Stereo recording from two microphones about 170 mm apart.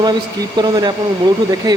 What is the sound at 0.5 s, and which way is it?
A man's voice, 25° right (ahead or behind).